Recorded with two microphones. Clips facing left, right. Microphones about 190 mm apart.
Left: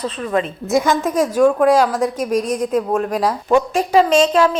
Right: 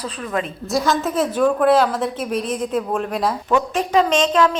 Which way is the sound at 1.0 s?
10° left (ahead or behind).